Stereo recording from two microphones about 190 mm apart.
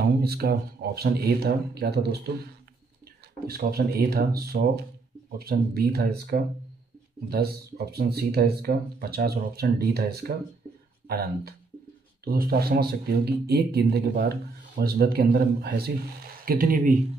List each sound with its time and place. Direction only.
0.0 s speech: 55° right (ahead or behind)
3.4 s speech: 55° right (ahead or behind)